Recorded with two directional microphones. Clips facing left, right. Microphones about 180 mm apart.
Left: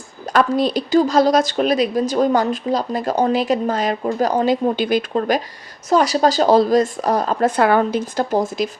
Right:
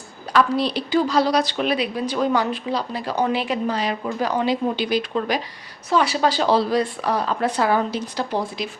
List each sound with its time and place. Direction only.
0.3 s speech: 45° left (ahead or behind)